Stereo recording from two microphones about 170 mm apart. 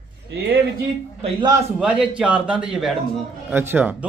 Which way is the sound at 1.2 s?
25° right (ahead or behind).